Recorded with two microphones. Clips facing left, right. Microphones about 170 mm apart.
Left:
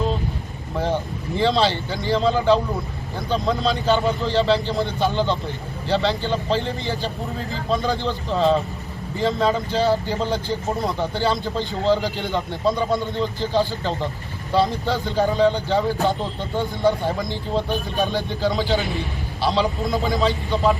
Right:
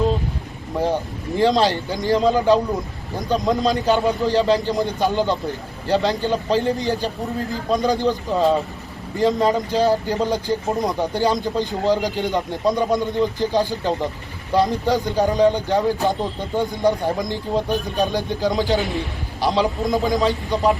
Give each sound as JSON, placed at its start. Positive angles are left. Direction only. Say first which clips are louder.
{"t": 1.4, "sound": "a man's voice", "louder": "right 2 dB", "side_deg": -15}